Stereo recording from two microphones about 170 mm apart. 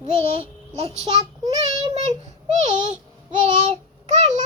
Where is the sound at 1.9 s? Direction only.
35° right (ahead or behind).